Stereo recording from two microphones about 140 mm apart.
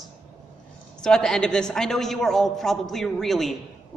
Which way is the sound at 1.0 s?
5° left (ahead or behind).